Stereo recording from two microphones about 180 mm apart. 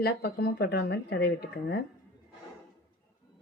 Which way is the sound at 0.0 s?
65° left (ahead or behind).